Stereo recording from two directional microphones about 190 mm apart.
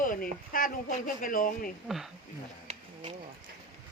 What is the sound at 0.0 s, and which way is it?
Speech, 45° left (ahead or behind).